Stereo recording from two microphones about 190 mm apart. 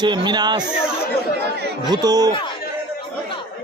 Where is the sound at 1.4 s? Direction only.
60° right (ahead or behind).